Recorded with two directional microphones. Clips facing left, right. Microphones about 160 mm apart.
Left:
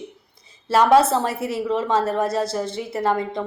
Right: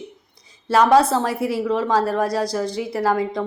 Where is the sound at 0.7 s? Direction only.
Centre (ahead or behind).